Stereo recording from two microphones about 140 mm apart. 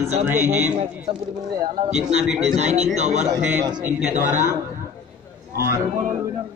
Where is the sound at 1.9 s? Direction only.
50° right (ahead or behind).